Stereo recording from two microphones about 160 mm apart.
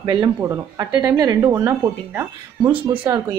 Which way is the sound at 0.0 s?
25° right (ahead or behind).